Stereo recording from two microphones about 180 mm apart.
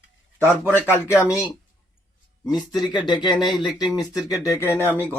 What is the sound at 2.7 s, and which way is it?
Speech, 20° left (ahead or behind).